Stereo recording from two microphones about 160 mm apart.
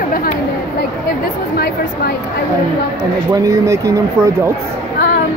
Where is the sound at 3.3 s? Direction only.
20° right (ahead or behind).